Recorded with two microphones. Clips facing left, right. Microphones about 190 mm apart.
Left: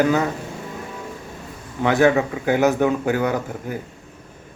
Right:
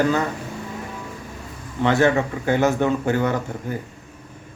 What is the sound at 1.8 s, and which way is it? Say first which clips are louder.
A man's voice: left 1 dB; 15° left (ahead or behind).